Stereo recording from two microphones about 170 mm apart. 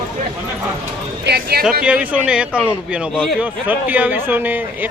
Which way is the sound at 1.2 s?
65° right (ahead or behind).